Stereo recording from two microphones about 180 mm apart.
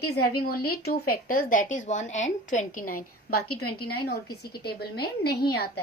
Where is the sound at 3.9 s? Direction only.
60° left (ahead or behind).